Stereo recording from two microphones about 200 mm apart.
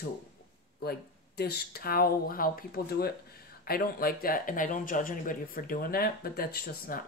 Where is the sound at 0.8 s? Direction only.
50° left (ahead or behind).